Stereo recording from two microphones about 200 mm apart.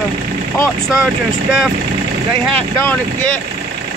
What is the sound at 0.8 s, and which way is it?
Speech, 5° right (ahead or behind).